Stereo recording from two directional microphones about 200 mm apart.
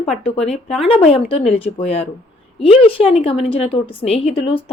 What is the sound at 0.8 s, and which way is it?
A woman's voice, 30° left (ahead or behind).